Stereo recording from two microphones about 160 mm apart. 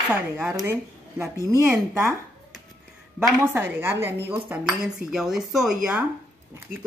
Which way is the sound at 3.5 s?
10° right (ahead or behind).